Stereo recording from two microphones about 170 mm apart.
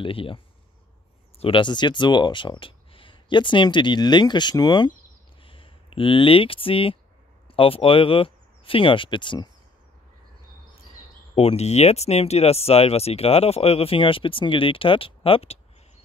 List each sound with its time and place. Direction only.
0.0 s speech: 30° left (ahead or behind)
1.4 s speech: 30° left (ahead or behind)
11.3 s speech: 40° left (ahead or behind)